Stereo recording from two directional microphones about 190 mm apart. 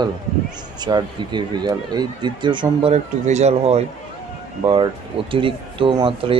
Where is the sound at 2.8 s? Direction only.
35° right (ahead or behind).